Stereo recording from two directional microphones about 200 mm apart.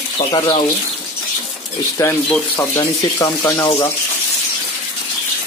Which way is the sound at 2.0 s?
15° left (ahead or behind).